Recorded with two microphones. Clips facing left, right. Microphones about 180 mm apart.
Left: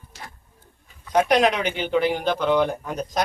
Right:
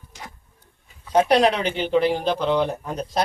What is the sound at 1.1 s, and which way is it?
A man's voice, 30° right (ahead or behind).